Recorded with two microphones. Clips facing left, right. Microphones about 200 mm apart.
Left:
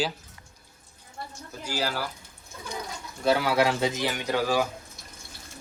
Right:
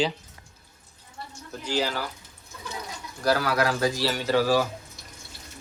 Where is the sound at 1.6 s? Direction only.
10° left (ahead or behind).